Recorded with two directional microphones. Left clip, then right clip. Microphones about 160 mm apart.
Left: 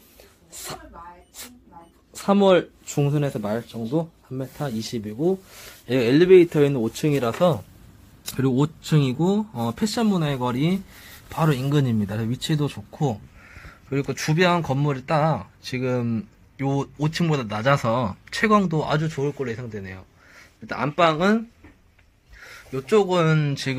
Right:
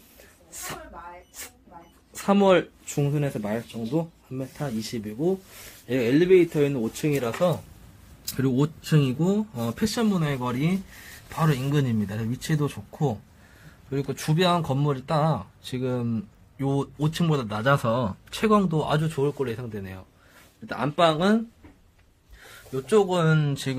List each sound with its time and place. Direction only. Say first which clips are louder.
2.1 s speech: left 2 dB; 10° left (ahead or behind)
2.9 s speech: left 5 dB; 25° left (ahead or behind); by 19.0 s centre (ahead or behind)
19.0 s speech: even; 15° right (ahead or behind); by 21.4 s 10° left (ahead or behind)
22.5 s speech: left 2 dB; 15° left (ahead or behind)